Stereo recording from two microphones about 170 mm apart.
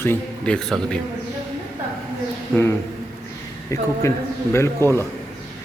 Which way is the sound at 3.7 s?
20° left (ahead or behind).